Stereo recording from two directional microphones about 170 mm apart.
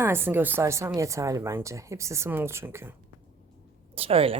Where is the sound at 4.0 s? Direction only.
35° right (ahead or behind).